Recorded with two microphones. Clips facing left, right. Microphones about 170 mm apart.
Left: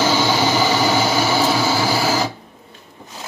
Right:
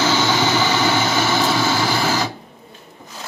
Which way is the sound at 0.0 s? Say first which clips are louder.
Left 1 dB; 10° left (ahead or behind).